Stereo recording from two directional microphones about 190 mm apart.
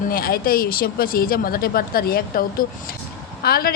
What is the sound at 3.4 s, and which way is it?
Speech, 55° left (ahead or behind).